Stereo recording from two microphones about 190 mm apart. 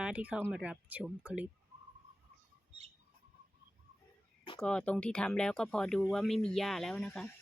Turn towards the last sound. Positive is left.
turn(degrees=5)  # may be behind; listen again after turning